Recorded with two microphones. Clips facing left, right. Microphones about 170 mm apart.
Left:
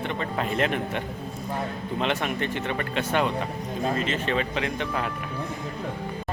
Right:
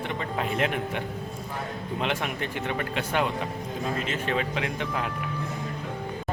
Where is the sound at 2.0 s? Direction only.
10° right (ahead or behind).